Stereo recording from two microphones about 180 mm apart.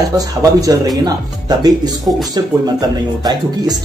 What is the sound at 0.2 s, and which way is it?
Speech, 20° right (ahead or behind).